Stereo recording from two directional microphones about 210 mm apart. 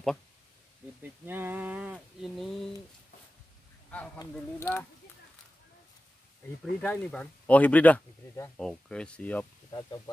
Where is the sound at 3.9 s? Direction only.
5° left (ahead or behind).